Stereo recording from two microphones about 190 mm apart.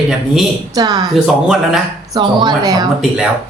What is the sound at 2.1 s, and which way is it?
Speech, 20° right (ahead or behind).